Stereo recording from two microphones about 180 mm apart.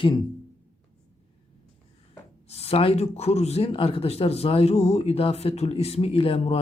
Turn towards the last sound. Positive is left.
turn(degrees=35)  # may be behind; listen again after turning